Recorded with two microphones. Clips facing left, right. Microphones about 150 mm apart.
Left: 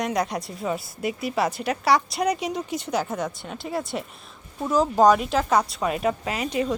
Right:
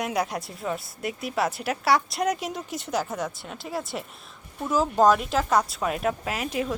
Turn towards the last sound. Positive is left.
turn(degrees=0)  # may be behind; listen again after turning